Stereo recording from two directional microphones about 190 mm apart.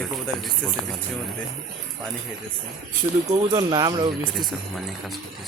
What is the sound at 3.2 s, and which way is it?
Speech, 25° right (ahead or behind).